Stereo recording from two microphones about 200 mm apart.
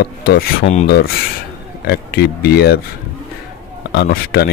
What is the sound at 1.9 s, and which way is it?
Speech, 50° left (ahead or behind).